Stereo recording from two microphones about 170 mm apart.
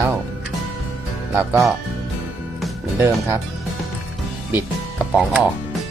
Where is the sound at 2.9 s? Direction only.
15° right (ahead or behind).